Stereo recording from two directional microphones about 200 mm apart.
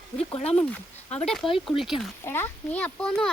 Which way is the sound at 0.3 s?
30° left (ahead or behind).